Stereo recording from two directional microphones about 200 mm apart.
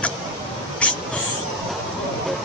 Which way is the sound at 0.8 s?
5° left (ahead or behind).